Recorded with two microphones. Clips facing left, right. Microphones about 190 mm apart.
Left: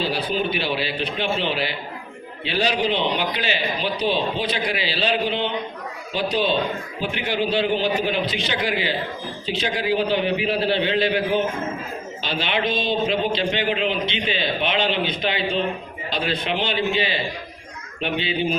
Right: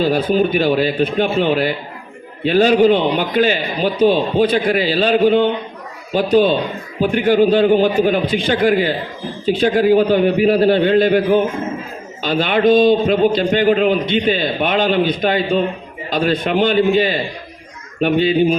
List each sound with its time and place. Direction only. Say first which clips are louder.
0.0 s a man's voice: right 9 dB; 45° right (ahead or behind)